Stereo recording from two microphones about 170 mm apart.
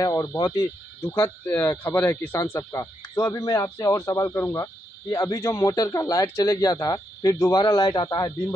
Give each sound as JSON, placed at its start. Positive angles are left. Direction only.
{"t": 0.0, "sound": "a man's voice", "side_deg": 20}